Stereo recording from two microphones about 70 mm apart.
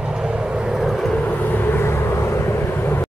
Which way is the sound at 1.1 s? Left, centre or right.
Left.